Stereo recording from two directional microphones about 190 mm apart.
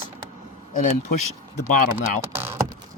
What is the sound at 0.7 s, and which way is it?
Speech, 40° left (ahead or behind).